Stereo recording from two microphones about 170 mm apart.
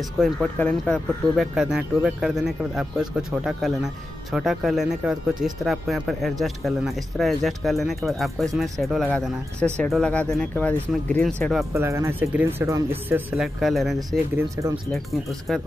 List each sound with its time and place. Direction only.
0.2 s speech: 10° left (ahead or behind)
11.7 s speech: 15° right (ahead or behind)
13.4 s speech: centre (ahead or behind)
13.9 s speech: 20° right (ahead or behind)
14.9 s speech: centre (ahead or behind)